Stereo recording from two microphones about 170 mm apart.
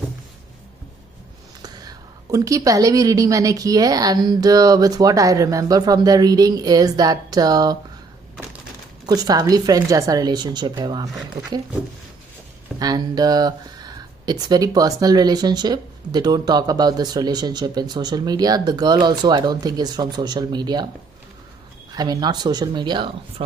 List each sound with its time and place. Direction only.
1.6 s speech: 25° right (ahead or behind)
9.0 s speech: 25° right (ahead or behind)
12.7 s speech: 25° right (ahead or behind)
21.9 s speech: 25° right (ahead or behind)